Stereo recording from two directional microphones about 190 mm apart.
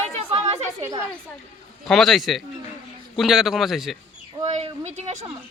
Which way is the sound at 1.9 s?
Centre (ahead or behind).